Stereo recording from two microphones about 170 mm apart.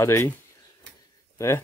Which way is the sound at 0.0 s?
15° left (ahead or behind).